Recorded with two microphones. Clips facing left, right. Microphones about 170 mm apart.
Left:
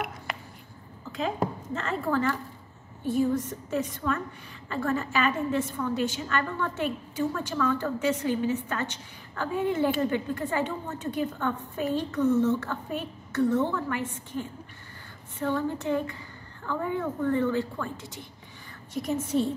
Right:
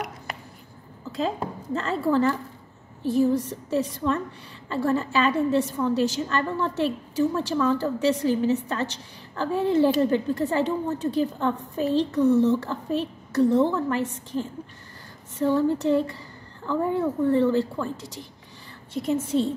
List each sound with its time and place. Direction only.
1.1 s a woman's voice: 35° right (ahead or behind)
19.2 s a woman's voice: 25° right (ahead or behind)